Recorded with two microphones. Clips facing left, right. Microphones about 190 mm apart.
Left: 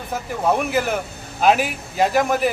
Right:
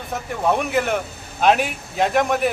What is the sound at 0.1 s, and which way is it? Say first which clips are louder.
A man's voice: even; centre (ahead or behind).